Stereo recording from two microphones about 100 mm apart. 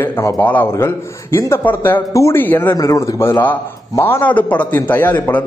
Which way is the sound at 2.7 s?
30° left (ahead or behind).